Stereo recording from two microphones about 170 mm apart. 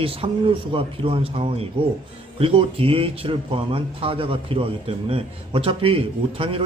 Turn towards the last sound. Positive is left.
turn(degrees=-30)  # may be behind; listen again after turning